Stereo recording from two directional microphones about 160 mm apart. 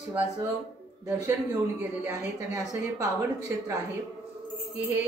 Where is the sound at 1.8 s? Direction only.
20° right (ahead or behind).